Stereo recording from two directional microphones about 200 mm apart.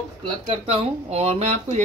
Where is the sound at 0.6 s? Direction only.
30° right (ahead or behind).